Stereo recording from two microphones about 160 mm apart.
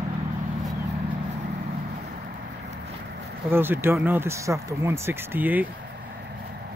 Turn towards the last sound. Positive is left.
turn(degrees=-10)  # may be behind; listen again after turning